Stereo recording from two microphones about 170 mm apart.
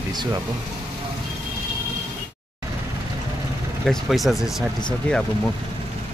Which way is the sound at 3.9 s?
Centre (ahead or behind).